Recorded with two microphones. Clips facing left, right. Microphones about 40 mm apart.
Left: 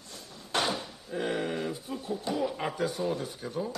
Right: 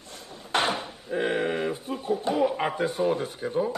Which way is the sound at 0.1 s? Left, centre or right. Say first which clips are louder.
Right 5 dB; right.